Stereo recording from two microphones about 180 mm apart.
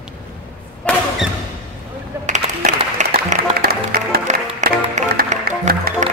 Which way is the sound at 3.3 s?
55° right (ahead or behind).